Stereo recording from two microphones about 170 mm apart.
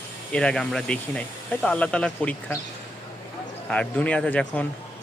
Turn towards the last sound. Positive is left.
turn(degrees=5)  # may be behind; listen again after turning